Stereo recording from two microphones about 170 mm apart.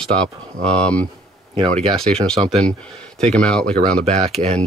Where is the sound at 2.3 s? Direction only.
35° right (ahead or behind).